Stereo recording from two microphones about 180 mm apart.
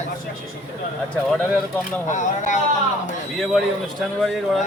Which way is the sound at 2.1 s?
45° left (ahead or behind).